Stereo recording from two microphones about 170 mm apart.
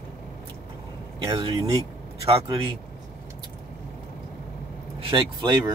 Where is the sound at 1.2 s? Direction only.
20° right (ahead or behind).